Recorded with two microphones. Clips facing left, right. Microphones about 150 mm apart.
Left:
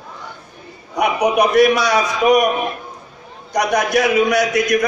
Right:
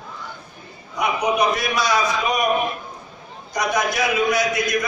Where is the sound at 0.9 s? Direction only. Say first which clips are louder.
Left 5 dB; 70° left (ahead or behind).